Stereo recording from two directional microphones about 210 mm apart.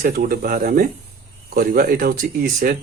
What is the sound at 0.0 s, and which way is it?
Speech, 45° right (ahead or behind).